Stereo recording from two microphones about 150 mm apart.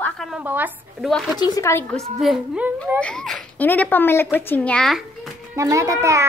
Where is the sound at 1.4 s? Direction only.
20° left (ahead or behind).